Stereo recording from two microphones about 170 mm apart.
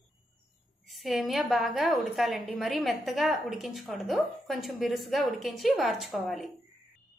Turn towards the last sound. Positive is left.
turn(degrees=0)  # may be behind; listen again after turning